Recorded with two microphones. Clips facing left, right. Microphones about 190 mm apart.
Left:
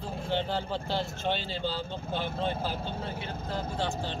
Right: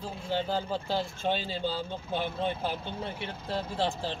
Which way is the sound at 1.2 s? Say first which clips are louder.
Right 1 dB; 45° right (ahead or behind).